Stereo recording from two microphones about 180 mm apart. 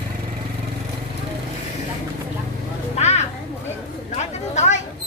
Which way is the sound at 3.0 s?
35° left (ahead or behind).